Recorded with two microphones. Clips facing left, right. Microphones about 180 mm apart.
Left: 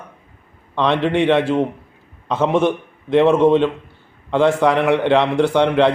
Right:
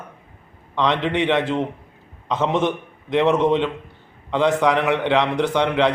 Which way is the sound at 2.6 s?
20° right (ahead or behind).